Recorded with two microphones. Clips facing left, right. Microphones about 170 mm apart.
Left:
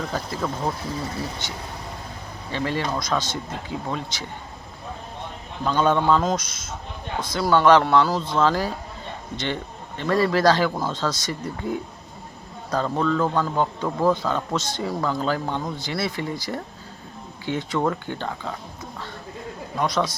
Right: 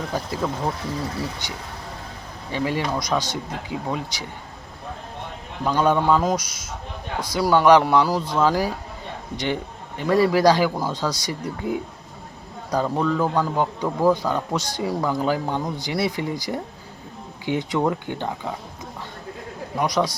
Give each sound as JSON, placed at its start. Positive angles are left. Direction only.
{"t": 0.1, "sound": "a man's voice", "side_deg": -10}
{"t": 5.6, "sound": "a man's voice", "side_deg": -10}
{"t": 19.7, "sound": "a man's voice", "side_deg": -15}